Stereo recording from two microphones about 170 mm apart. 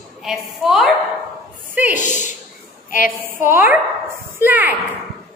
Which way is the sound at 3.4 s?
10° right (ahead or behind).